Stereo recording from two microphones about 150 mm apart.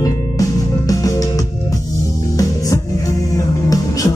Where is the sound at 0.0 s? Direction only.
25° left (ahead or behind).